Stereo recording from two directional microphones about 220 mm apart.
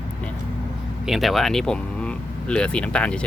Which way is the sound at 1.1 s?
Centre (ahead or behind).